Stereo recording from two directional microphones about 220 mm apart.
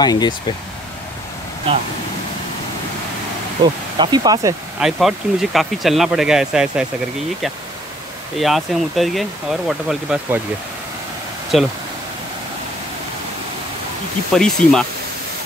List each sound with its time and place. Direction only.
0.0 s speech: 20° left (ahead or behind)
3.6 s speech: 20° right (ahead or behind)
4.7 s speech: centre (ahead or behind)
8.4 s speech: centre (ahead or behind)
11.5 s speech: centre (ahead or behind)
14.3 s speech: centre (ahead or behind)